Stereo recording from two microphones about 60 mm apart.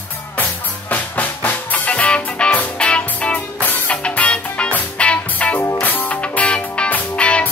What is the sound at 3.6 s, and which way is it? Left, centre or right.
Music, left.